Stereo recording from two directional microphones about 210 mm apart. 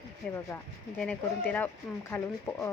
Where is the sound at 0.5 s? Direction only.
10° left (ahead or behind).